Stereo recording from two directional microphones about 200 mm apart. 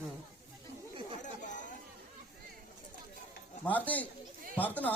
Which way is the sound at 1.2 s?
40° left (ahead or behind).